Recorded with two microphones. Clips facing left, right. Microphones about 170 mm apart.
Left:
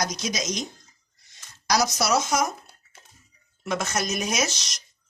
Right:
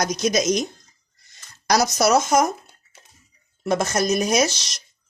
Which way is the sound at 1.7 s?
50° right (ahead or behind).